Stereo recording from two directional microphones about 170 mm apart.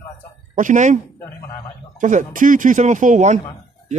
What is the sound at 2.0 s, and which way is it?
Speech, 45° right (ahead or behind).